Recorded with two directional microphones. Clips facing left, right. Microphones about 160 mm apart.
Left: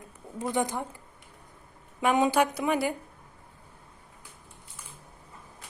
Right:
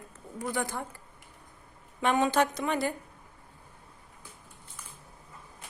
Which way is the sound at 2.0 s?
15° left (ahead or behind).